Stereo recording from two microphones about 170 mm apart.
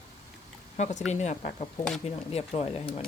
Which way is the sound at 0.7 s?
45° left (ahead or behind).